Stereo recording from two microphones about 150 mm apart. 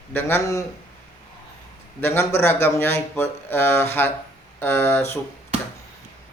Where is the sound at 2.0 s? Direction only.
15° left (ahead or behind).